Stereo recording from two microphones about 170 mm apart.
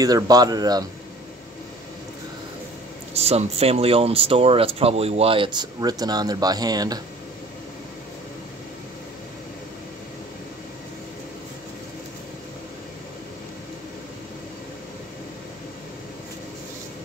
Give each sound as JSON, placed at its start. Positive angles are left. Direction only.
{"t": 0.0, "sound": "speech", "side_deg": -20}
{"t": 3.2, "sound": "speech", "side_deg": -35}